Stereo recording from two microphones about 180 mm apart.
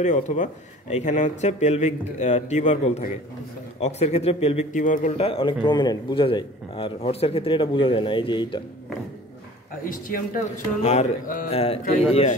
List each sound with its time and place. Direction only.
0.0 s speech: 45° left (ahead or behind)
5.1 s a man's voice: 30° left (ahead or behind)
9.8 s speech: 50° left (ahead or behind)